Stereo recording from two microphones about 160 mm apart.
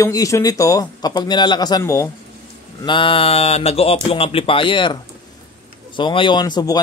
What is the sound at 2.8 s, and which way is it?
Mantra, 30° left (ahead or behind).